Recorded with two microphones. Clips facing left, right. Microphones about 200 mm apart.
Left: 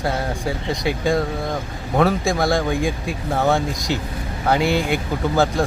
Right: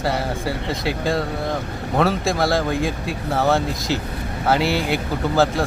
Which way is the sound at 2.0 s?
Centre (ahead or behind).